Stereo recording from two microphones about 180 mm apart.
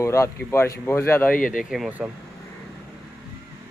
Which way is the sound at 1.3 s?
50° left (ahead or behind).